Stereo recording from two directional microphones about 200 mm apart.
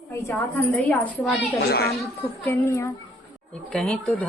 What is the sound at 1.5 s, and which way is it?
Speech, 50° left (ahead or behind).